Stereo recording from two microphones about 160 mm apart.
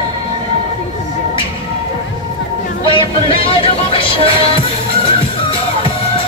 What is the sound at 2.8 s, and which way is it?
Music, 35° left (ahead or behind).